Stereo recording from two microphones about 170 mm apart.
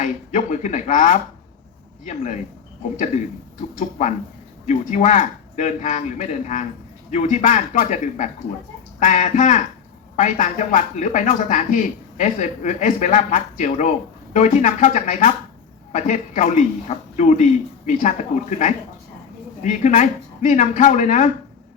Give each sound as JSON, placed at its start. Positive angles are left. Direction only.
{"t": 0.0, "sound": "speech", "side_deg": 45}
{"t": 3.8, "sound": "speech", "side_deg": 45}